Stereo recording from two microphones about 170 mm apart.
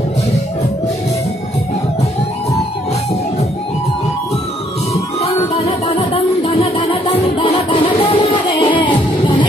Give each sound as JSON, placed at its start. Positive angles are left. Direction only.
{"t": 5.2, "sound": "music", "side_deg": 35}